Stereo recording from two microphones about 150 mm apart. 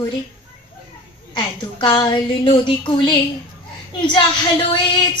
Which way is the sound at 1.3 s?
30° left (ahead or behind).